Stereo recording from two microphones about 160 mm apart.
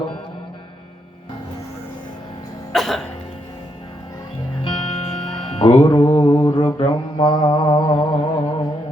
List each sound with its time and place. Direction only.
2.7 s music: centre (ahead or behind)
4.6 s music: 35° left (ahead or behind)
6.0 s mantra: 15° left (ahead or behind)